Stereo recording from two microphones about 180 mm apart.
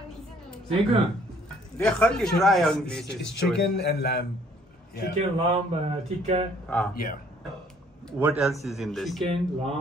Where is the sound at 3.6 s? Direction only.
65° left (ahead or behind).